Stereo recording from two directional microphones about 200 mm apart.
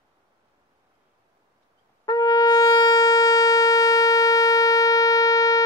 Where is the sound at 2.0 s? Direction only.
20° left (ahead or behind).